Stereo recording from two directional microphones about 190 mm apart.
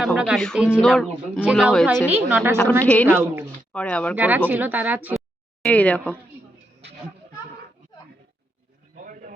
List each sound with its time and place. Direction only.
0.0 s a woman's voice: centre (ahead or behind)
2.0 s speech: 10° right (ahead or behind)
2.8 s a woman's voice: 5° left (ahead or behind)
3.1 s speech: 10° right (ahead or behind)
3.7 s speech: 5° left (ahead or behind)
4.1 s speech: 10° right (ahead or behind)
5.6 s a woman's voice: 10° left (ahead or behind)
9.0 s a sound: 45° right (ahead or behind)